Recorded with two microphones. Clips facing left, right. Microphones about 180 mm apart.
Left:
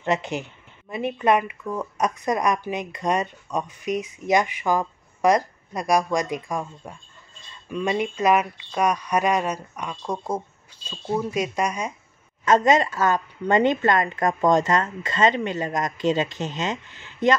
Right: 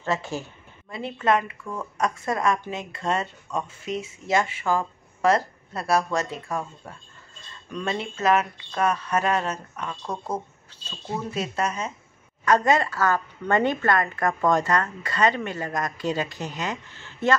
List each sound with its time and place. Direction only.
0.0 s a woman's voice: 20° left (ahead or behind)